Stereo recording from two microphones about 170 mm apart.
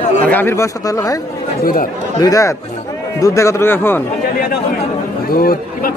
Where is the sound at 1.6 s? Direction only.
55° left (ahead or behind).